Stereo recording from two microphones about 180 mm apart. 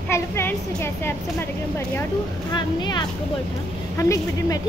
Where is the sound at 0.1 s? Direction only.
15° left (ahead or behind).